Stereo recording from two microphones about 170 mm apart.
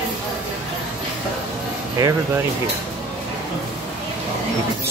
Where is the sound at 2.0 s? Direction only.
20° right (ahead or behind).